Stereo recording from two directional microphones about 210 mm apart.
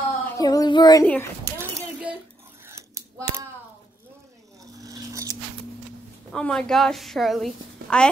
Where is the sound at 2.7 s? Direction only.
15° right (ahead or behind).